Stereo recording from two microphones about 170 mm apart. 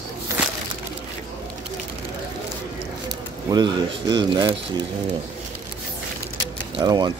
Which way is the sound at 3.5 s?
25° right (ahead or behind).